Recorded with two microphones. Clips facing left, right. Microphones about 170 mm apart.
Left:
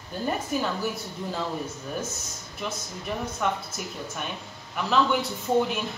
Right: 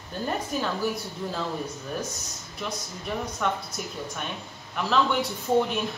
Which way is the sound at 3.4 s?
5° left (ahead or behind).